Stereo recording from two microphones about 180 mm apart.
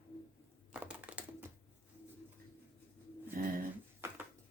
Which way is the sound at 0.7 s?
10° right (ahead or behind).